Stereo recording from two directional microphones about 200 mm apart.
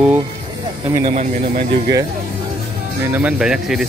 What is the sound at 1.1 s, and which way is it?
Speech, 35° right (ahead or behind).